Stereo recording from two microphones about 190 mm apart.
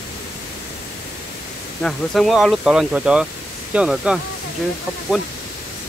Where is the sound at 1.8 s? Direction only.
Centre (ahead or behind).